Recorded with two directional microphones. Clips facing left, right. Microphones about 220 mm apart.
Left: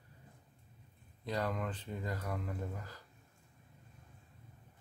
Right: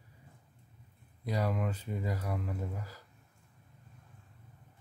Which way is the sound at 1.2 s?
10° right (ahead or behind).